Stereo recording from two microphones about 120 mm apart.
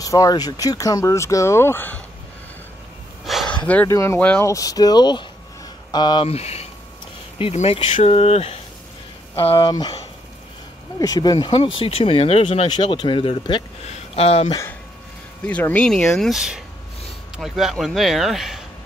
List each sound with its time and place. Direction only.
0.0 s speech: 30° left (ahead or behind)
3.3 s a sound: centre (ahead or behind)
3.8 s speech: 25° left (ahead or behind)
6.2 s speech: 60° left (ahead or behind); by 9.9 s 40° left (ahead or behind)
11.0 s speech: 30° left (ahead or behind)
11.5 s speech: 50° left (ahead or behind)
12.6 s speech: 40° left (ahead or behind)
13.8 s speech: 60° left (ahead or behind)
15.4 s speech: 10° left (ahead or behind)